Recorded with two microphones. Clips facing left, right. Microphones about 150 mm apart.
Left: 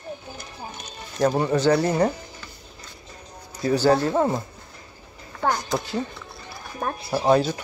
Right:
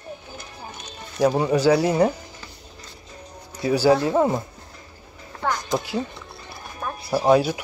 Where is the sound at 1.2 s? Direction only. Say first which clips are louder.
Right 2 dB; 10° right (ahead or behind).